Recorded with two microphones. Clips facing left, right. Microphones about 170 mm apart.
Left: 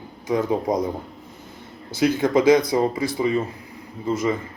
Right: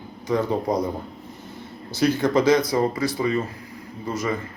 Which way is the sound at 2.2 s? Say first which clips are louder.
Left 3 dB; 15° left (ahead or behind).